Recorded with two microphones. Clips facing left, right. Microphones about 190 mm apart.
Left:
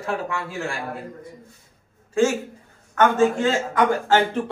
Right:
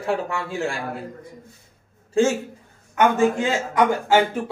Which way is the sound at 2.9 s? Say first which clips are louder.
Even; 15° right (ahead or behind).